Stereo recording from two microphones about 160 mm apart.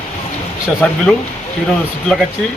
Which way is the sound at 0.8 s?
5° left (ahead or behind).